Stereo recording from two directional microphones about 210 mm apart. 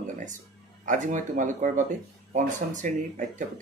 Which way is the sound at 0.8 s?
35° right (ahead or behind).